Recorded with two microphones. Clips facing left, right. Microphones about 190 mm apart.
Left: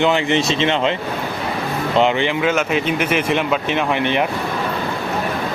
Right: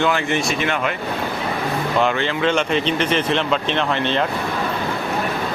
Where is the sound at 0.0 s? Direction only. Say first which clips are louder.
Left 3 dB; 20° left (ahead or behind).